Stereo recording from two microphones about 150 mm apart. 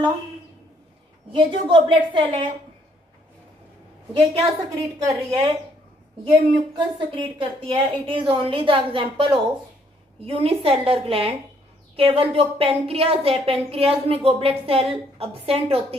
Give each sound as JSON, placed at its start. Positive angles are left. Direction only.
{"t": 1.3, "sound": "a woman's voice", "side_deg": -35}
{"t": 4.1, "sound": "a woman's voice", "side_deg": -35}
{"t": 4.9, "sound": "a woman's voice", "side_deg": -25}